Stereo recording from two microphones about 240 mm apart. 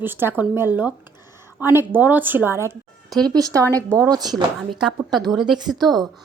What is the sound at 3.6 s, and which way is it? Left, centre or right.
Speech, centre.